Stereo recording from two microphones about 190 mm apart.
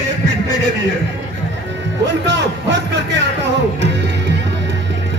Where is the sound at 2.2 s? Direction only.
65° right (ahead or behind).